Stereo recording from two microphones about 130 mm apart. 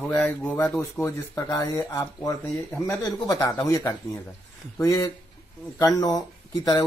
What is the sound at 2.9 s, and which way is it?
Speech, 25° left (ahead or behind).